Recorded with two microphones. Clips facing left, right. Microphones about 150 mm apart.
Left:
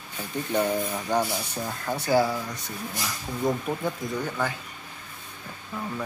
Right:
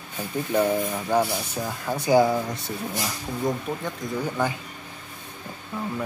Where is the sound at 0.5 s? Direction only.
5° right (ahead or behind); by 3.1 s 30° right (ahead or behind).